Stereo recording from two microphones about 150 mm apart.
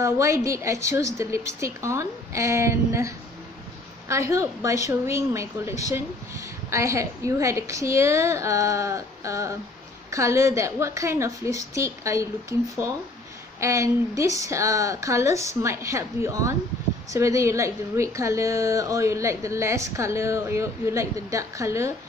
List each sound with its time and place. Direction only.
0.0 s a woman's voice: 20° right (ahead or behind)
4.1 s a woman's voice: 20° right (ahead or behind)